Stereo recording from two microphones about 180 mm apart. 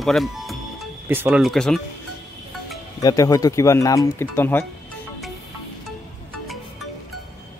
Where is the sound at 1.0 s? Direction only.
10° right (ahead or behind).